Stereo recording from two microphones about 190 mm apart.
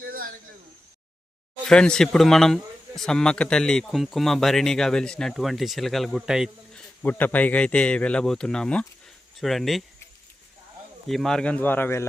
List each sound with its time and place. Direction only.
0.0 s a sound: 50° right (ahead or behind)
1.6 s speech: 5° left (ahead or behind)
7.0 s a man's voice: 10° left (ahead or behind)
11.1 s a man's voice: centre (ahead or behind)